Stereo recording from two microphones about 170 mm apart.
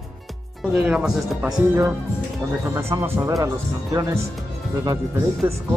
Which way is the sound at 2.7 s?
15° right (ahead or behind).